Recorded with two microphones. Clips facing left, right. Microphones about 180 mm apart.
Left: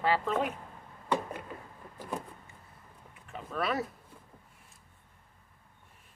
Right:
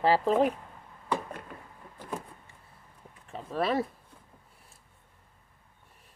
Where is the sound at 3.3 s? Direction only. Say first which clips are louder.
Right 4 dB; 30° right (ahead or behind).